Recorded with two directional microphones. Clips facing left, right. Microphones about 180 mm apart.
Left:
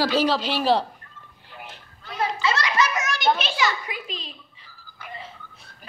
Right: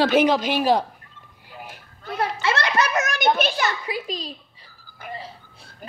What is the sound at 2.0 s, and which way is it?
Children playing, 60° right (ahead or behind).